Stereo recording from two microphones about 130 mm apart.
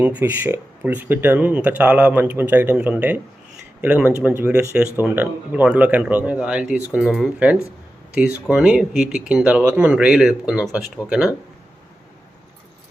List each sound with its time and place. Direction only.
0.0 s speech: 10° right (ahead or behind)